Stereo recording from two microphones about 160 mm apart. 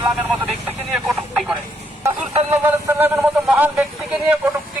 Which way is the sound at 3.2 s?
5° right (ahead or behind).